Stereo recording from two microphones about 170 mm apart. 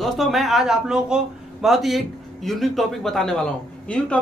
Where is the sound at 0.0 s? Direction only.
Centre (ahead or behind).